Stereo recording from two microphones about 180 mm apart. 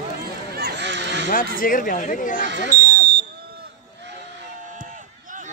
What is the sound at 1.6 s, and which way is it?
Speech, 50° left (ahead or behind).